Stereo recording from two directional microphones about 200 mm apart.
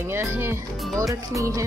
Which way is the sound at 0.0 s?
10° right (ahead or behind).